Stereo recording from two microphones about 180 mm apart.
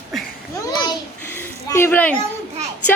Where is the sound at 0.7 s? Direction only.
20° left (ahead or behind).